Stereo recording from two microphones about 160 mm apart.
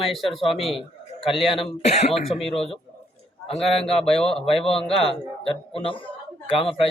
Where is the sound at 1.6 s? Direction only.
40° left (ahead or behind).